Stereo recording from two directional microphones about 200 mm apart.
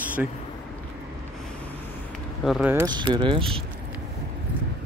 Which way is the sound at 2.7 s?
20° right (ahead or behind).